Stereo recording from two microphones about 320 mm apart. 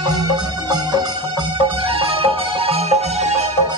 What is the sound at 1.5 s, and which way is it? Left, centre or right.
Music, centre.